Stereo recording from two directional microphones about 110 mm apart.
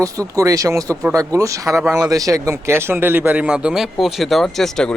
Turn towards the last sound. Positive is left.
turn(degrees=5)  # may be behind; listen again after turning